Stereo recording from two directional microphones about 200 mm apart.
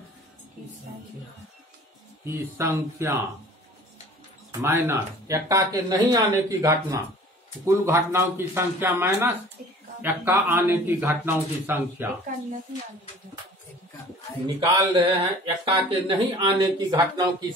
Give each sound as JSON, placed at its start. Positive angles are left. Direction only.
{"t": 2.2, "sound": "speech", "side_deg": -15}
{"t": 4.5, "sound": "speech", "side_deg": -15}
{"t": 12.3, "sound": "speech", "side_deg": -40}
{"t": 14.6, "sound": "speech", "side_deg": -25}